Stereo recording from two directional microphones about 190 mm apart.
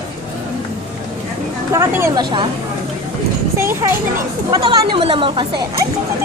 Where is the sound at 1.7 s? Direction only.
15° right (ahead or behind).